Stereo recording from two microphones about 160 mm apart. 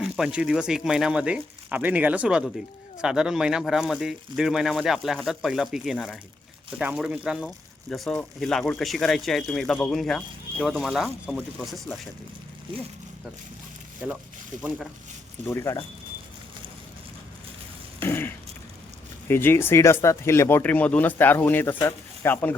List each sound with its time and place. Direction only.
0.0 s speech: 5° right (ahead or behind)
15.4 s speech: 15° left (ahead or behind)
18.0 s speech: 15° left (ahead or behind)